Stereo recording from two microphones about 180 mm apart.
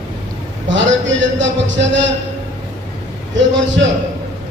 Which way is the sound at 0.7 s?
90° right.